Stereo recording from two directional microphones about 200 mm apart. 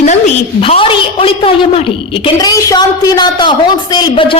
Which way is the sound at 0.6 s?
25° left (ahead or behind).